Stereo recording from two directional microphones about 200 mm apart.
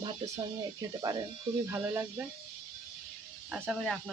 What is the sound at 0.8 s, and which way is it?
Speech, 20° right (ahead or behind).